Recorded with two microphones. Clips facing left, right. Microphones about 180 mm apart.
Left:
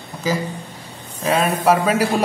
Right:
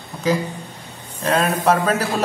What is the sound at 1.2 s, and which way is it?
Speech, 10° left (ahead or behind).